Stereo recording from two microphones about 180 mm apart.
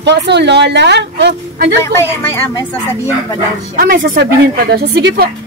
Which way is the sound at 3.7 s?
50° right (ahead or behind).